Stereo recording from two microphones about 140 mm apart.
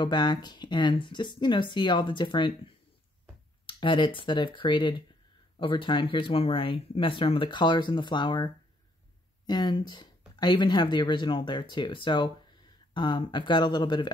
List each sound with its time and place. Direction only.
0.0 s speech: 30° left (ahead or behind)
9.5 s speech: 35° left (ahead or behind)